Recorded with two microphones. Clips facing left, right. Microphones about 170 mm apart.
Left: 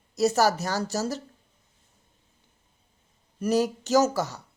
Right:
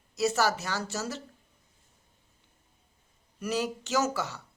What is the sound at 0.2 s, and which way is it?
Speech, 40° left (ahead or behind).